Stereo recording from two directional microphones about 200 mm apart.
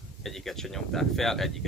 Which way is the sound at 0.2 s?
Centre (ahead or behind).